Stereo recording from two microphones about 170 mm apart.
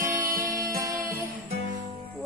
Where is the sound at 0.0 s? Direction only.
55° right (ahead or behind).